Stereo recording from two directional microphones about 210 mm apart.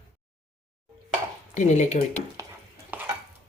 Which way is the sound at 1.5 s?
35° left (ahead or behind).